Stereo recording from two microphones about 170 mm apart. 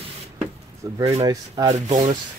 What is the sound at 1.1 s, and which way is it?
Speech, 20° right (ahead or behind).